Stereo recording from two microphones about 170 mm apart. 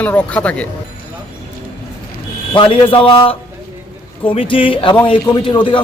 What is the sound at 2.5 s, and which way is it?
A man's voice, 30° left (ahead or behind).